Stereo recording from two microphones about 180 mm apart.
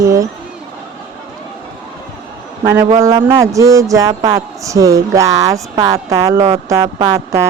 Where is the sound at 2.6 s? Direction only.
15° right (ahead or behind).